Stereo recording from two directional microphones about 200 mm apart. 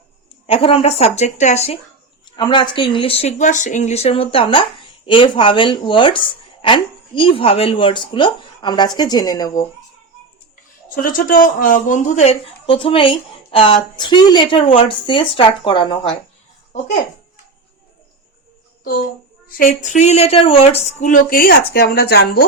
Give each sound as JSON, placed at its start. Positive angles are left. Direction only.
{"t": 0.4, "sound": "speech", "side_deg": 30}
{"t": 10.8, "sound": "speech", "side_deg": 45}
{"t": 19.5, "sound": "speech", "side_deg": 45}
{"t": 21.1, "sound": "speech", "side_deg": 45}